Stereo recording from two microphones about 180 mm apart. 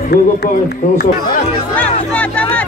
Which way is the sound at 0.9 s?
55° left (ahead or behind).